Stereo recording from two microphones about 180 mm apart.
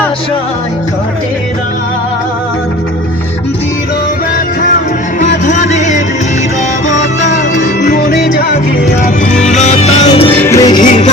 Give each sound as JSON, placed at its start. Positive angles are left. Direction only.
{"t": 5.5, "sound": "music", "side_deg": 40}
{"t": 7.8, "sound": "music", "side_deg": 45}
{"t": 9.4, "sound": "music", "side_deg": 40}
{"t": 10.3, "sound": "music", "side_deg": 15}
{"t": 10.8, "sound": "music", "side_deg": 40}